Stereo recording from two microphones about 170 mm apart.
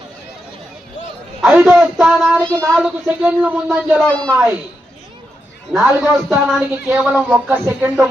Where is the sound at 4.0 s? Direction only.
5° left (ahead or behind).